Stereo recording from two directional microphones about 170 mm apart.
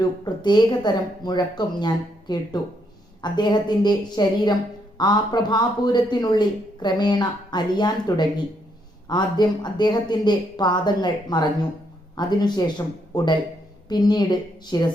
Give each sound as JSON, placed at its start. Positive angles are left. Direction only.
{"t": 0.0, "sound": "speech", "side_deg": 25}